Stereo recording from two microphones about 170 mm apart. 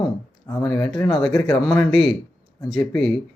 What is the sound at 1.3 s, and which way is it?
Speech, 25° left (ahead or behind).